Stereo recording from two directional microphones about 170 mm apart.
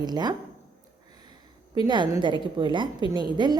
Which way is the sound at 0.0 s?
25° right (ahead or behind).